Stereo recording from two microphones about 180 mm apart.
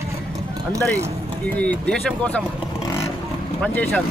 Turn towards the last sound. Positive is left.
turn(degrees=10)  # may be behind; listen again after turning